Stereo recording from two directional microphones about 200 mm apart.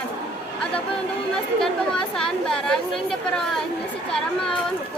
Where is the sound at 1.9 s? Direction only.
5° left (ahead or behind).